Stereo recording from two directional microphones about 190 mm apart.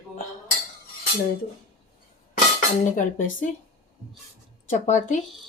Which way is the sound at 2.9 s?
45° left (ahead or behind).